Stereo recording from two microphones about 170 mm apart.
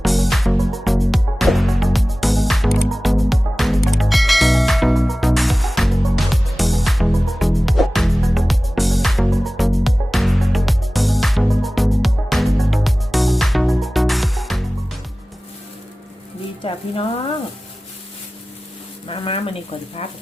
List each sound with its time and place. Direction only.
0.0 s music: centre (ahead or behind)
16.6 s sizzle: 35° left (ahead or behind)
19.0 s a sound: 35° left (ahead or behind)